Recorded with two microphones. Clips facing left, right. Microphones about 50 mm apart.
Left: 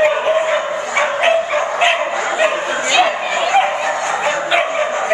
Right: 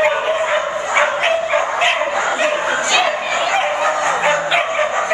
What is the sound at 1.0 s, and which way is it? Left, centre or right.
Dog, right.